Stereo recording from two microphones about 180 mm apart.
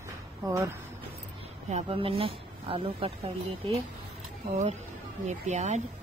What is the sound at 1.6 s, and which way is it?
Speech, 35° right (ahead or behind).